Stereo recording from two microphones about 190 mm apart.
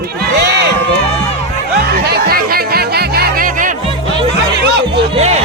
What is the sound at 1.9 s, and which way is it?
Music, 55° right (ahead or behind).